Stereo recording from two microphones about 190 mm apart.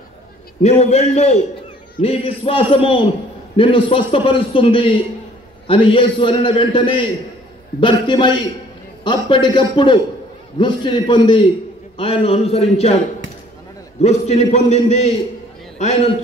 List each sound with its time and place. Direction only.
0.6 s a man's voice: 35° left (ahead or behind)
14.0 s a man's voice: 35° left (ahead or behind)